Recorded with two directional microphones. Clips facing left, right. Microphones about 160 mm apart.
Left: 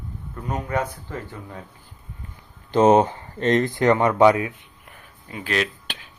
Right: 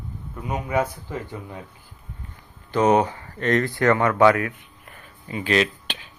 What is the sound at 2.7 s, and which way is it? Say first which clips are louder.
Speech: left 3 dB; 25° left (ahead or behind).